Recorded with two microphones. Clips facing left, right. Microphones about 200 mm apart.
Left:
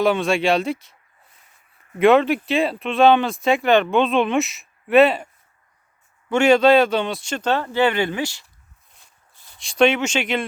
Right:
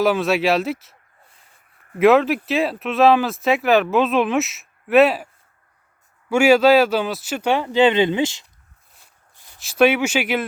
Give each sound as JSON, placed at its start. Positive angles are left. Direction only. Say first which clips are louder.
{"t": 0.0, "sound": "speech", "louder": "right 1 dB", "side_deg": -5}
{"t": 2.0, "sound": "speech", "louder": "even", "side_deg": 0}
{"t": 9.3, "sound": "a sound", "louder": "right 1 dB", "side_deg": -15}
{"t": 9.6, "sound": "speech", "louder": "right 1 dB", "side_deg": -5}